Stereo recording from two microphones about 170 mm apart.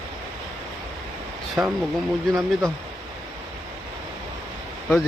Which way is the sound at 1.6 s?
5° right (ahead or behind).